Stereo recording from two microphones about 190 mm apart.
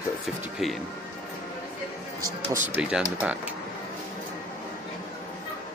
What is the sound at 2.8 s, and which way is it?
Speech, 5° right (ahead or behind).